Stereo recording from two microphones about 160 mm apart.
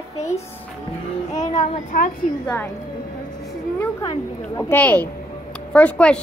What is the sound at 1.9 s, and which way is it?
Speech, 60° left (ahead or behind).